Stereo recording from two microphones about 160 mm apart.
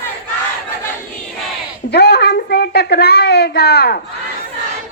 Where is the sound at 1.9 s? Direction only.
90° left.